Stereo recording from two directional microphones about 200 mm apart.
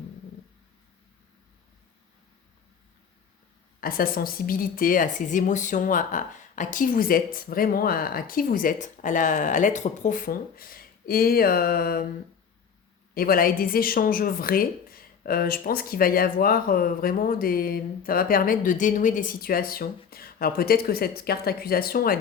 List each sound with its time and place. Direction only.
3.8 s a woman's voice: 45° left (ahead or behind)
13.1 s a woman's voice: 45° left (ahead or behind)